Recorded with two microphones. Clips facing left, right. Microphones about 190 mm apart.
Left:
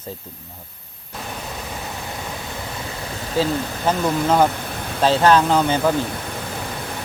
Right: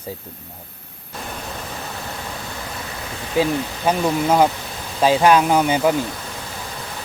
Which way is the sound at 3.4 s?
15° right (ahead or behind).